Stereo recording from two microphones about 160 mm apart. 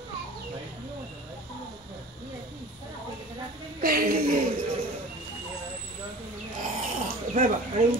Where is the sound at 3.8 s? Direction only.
65° right (ahead or behind).